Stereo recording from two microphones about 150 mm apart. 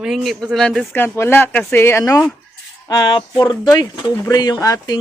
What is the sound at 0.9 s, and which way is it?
Speech, 15° left (ahead or behind).